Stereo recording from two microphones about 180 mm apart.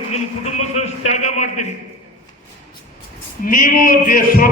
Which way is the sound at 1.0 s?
40° left (ahead or behind).